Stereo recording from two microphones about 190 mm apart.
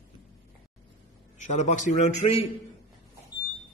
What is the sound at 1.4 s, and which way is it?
A man's voice, 40° left (ahead or behind).